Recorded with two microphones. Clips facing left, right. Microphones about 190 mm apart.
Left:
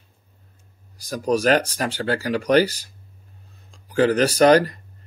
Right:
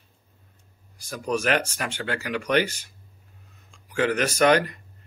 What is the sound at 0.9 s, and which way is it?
Speech, 40° left (ahead or behind).